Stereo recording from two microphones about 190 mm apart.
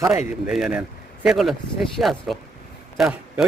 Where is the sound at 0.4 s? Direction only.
5° right (ahead or behind).